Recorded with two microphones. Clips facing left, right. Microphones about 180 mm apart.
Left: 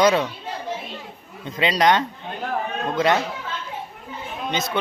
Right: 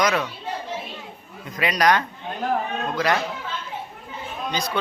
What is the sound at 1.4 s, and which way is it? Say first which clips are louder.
A man's voice: left 2 dB; 25° left (ahead or behind).